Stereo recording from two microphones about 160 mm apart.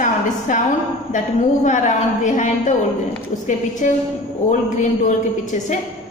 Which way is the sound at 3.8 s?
50° left (ahead or behind).